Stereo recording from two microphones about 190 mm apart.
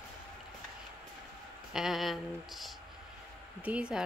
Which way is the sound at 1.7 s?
Centre (ahead or behind).